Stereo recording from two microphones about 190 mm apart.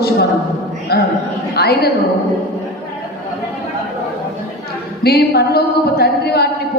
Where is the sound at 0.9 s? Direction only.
55° left (ahead or behind).